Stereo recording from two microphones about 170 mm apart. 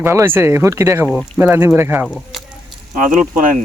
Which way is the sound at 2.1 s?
Centre (ahead or behind).